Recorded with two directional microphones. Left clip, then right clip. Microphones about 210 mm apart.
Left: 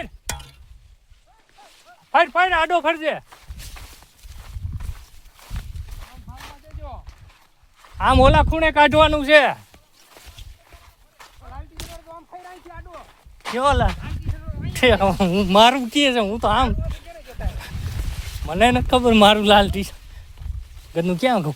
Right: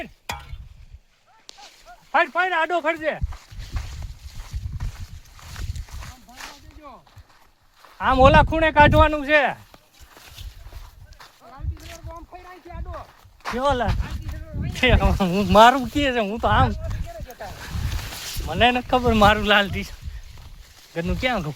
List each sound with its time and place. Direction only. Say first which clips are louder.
0.3 s a sound: right 2 dB; 5° left (ahead or behind)
2.1 s speech: left 3 dB; 5° right (ahead or behind)
7.9 s speech: left 3 dB; 25° left (ahead or behind)
8.3 s speech: right 1 dB; 10° right (ahead or behind)
8.6 s speech: left 3 dB; 10° left (ahead or behind)
9.0 s speech: left 4 dB; 25° left (ahead or behind)
12.1 s a sound: left 1 dB; 50° right (ahead or behind)
13.6 s speech: left 3 dB; centre (ahead or behind)
14.7 s speech: left 4 dB; 30° left (ahead or behind)
16.0 s speech: left 4 dB; 35° left (ahead or behind)
18.4 s speech: left 2 dB; 25° left (ahead or behind); by 19.9 s 50° left (ahead or behind)
20.9 s speech: left 5 dB; 50° left (ahead or behind)